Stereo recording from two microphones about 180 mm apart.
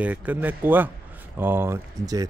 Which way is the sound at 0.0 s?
10° right (ahead or behind).